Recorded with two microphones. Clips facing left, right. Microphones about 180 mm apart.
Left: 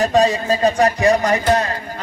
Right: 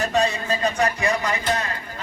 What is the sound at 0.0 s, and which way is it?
A man's voice, 35° left (ahead or behind).